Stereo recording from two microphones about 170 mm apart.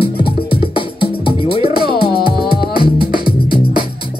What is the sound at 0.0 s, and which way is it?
Music, 30° left (ahead or behind).